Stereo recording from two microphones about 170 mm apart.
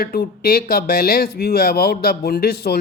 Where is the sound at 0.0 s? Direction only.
60° left (ahead or behind).